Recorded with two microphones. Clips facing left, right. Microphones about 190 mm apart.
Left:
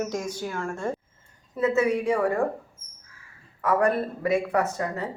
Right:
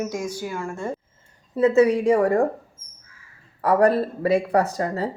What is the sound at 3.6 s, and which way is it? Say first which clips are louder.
Speech: right 5 dB; 35° right (ahead or behind).